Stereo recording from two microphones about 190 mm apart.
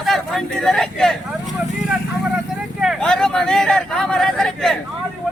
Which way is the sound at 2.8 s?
Centre (ahead or behind).